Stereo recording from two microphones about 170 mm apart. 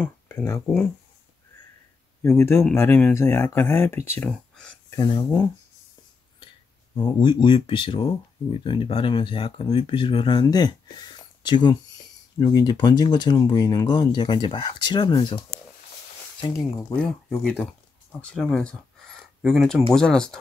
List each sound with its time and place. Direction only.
0.0 s speech: 15° left (ahead or behind)
2.2 s speech: 15° left (ahead or behind)
7.0 s speech: 25° left (ahead or behind)
16.5 s speech: 10° left (ahead or behind)